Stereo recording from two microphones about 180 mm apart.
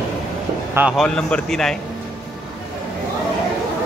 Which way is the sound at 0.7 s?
5° right (ahead or behind).